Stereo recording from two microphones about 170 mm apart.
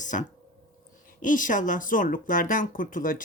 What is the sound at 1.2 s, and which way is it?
Speech, 50° left (ahead or behind).